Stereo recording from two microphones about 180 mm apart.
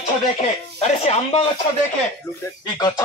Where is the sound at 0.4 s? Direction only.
35° left (ahead or behind).